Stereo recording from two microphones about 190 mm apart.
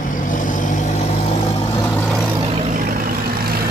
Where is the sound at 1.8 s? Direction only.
10° left (ahead or behind).